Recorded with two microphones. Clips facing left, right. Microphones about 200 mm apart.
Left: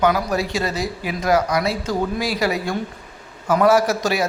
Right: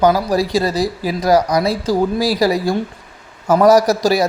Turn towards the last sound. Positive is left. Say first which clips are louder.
# right 5 dB
turn(degrees=-35)  # may be behind; listen again after turning